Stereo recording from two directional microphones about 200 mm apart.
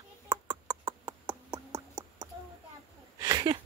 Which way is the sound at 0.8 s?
20° right (ahead or behind).